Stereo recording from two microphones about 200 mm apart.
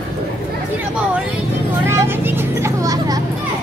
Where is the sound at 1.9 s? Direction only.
10° right (ahead or behind).